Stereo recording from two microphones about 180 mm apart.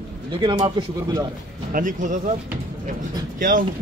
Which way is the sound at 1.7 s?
45° right (ahead or behind).